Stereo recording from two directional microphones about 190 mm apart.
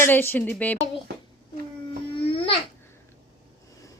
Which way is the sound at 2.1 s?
30° left (ahead or behind).